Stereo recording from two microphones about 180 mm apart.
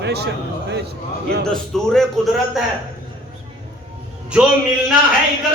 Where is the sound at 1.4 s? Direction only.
5° left (ahead or behind).